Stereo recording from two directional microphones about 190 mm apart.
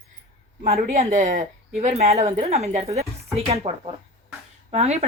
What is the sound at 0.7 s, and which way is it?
A woman's voice, 40° right (ahead or behind).